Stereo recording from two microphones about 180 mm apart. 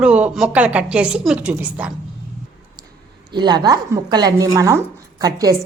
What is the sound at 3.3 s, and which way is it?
Speech, 25° right (ahead or behind).